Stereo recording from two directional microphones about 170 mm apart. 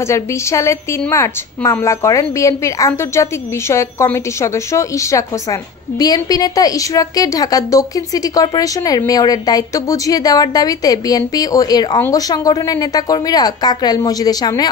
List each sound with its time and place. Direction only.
0.0 s a woman's voice: 15° left (ahead or behind)